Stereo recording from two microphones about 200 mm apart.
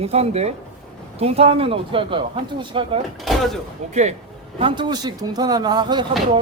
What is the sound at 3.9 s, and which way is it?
Speech, 35° right (ahead or behind).